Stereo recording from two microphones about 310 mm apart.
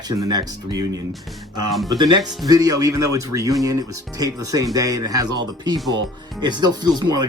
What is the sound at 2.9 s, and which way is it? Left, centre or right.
Speech, right.